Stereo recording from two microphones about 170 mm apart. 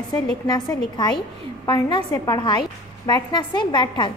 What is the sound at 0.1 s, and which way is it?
A woman's voice, 25° left (ahead or behind).